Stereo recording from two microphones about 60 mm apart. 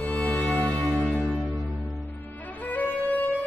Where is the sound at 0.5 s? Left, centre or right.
Left.